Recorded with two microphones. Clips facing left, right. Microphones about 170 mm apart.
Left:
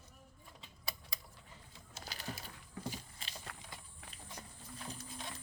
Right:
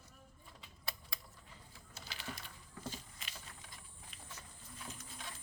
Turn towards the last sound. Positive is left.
turn(degrees=35)  # may be behind; listen again after turning